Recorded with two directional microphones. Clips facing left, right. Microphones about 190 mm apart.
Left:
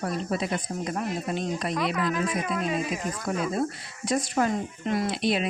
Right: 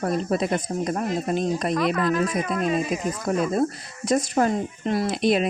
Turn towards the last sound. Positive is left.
turn(degrees=-45)  # may be behind; listen again after turning